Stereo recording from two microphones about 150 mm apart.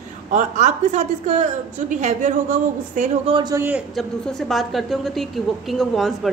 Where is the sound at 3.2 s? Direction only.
35° right (ahead or behind).